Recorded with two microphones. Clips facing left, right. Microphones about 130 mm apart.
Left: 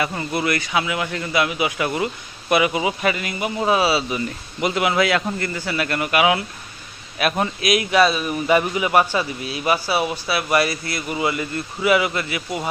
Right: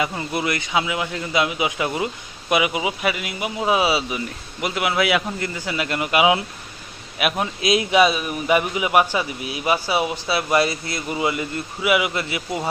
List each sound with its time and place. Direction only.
0.3 s a man's voice: 20° right (ahead or behind)
4.6 s a man's voice: 5° right (ahead or behind); by 6.4 s 20° right (ahead or behind)
7.2 s a man's voice: 5° right (ahead or behind)
7.6 s a man's voice: 25° right (ahead or behind)
8.0 s a man's voice: 5° right (ahead or behind)
12.1 s a man's voice: 25° right (ahead or behind)